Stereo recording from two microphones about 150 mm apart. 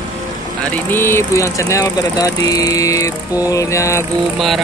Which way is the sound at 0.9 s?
15° left (ahead or behind).